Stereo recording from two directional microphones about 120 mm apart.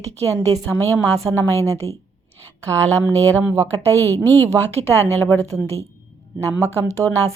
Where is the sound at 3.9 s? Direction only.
20° left (ahead or behind).